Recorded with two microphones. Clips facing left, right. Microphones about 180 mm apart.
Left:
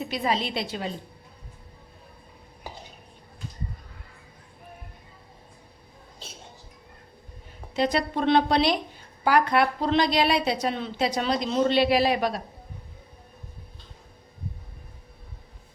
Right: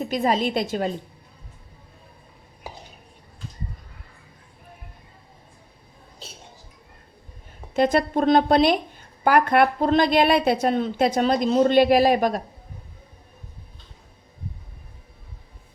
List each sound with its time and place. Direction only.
0.0 s a woman's voice: 45° right (ahead or behind)
7.7 s a woman's voice: 50° right (ahead or behind)